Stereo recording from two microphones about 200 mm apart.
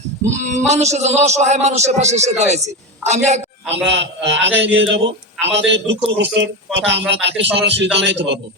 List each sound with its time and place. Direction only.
0.5 s a man's voice: 35° right (ahead or behind)
3.8 s a man's voice: 60° right (ahead or behind)